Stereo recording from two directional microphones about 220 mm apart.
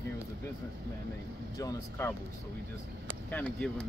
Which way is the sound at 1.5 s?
15° left (ahead or behind).